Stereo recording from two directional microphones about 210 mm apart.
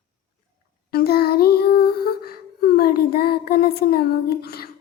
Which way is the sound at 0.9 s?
45° left (ahead or behind).